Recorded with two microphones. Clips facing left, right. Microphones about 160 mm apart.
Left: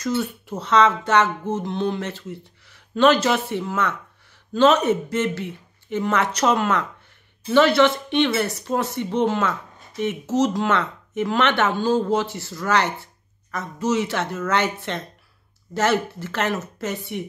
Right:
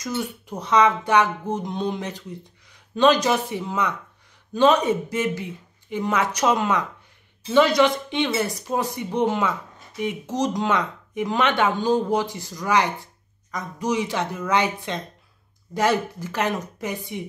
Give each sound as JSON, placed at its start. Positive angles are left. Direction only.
{"t": 0.0, "sound": "speech", "side_deg": -15}